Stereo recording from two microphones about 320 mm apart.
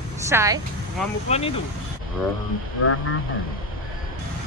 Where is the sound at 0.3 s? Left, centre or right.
Centre.